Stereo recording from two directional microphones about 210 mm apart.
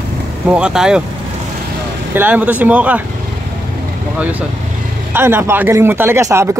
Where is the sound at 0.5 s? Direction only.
5° right (ahead or behind).